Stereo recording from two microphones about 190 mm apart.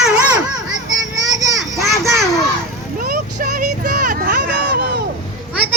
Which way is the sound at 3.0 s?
50° right (ahead or behind).